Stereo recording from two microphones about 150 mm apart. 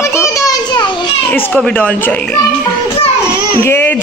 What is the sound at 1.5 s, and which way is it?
Speech, 5° left (ahead or behind).